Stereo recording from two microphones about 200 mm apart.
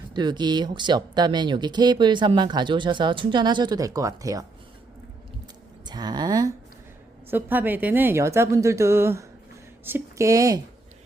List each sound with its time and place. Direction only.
0.1 s speech: 20° right (ahead or behind)
5.8 s a sound: 20° right (ahead or behind)
7.3 s a woman's voice: 10° right (ahead or behind)